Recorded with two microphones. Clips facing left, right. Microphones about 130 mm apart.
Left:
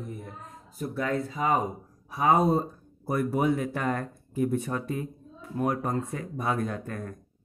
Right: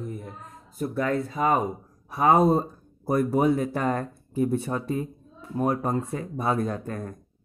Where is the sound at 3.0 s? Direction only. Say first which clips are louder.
Right 4 dB; 35° right (ahead or behind).